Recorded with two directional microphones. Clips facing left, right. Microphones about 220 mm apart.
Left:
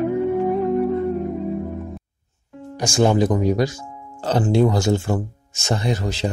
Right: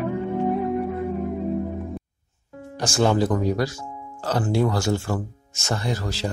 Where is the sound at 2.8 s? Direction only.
15° left (ahead or behind).